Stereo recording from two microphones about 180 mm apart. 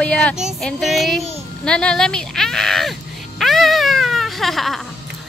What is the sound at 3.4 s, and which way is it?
Music, centre (ahead or behind).